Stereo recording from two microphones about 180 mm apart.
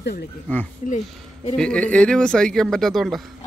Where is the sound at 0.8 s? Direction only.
40° left (ahead or behind).